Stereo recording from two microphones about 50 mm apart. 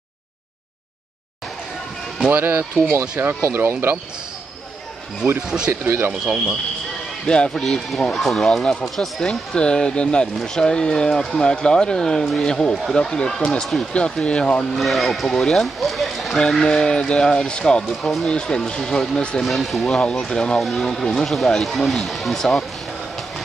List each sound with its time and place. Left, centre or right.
2.3 s speech: right
2.9 s speech: right
5.7 s speech: right
6.2 s speech: centre
7.2 s speech: centre
7.6 s speech: centre
9.2 s speech: centre
14.8 s speech: centre
16.5 s speech: centre
17.8 s speech: centre
19.4 s speech: centre
20.2 s speech: centre
20.5 s speech: centre